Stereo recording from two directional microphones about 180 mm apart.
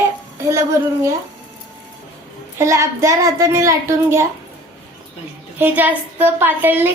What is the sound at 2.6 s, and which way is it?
A woman's voice, 15° right (ahead or behind).